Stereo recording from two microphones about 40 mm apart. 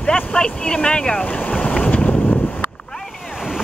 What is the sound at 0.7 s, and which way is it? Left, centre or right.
Speech, left.